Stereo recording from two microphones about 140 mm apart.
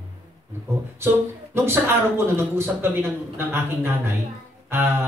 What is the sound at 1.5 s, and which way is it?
Speech, 20° right (ahead or behind).